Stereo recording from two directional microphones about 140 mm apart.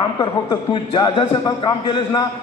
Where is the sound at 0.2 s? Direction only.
30° left (ahead or behind).